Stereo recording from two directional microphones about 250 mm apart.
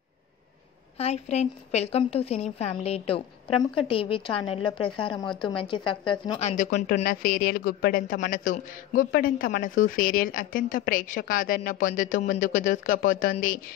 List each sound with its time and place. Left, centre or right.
0.9 s a woman's voice: left
6.5 s a woman's voice: left